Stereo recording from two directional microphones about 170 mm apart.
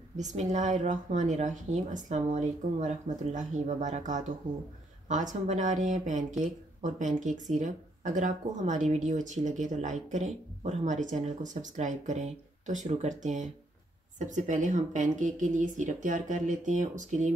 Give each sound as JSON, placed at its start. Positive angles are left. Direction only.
{"t": 0.2, "sound": "speech", "side_deg": -45}